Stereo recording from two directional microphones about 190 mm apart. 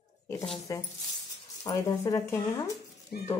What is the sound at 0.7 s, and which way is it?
Speech, 15° left (ahead or behind).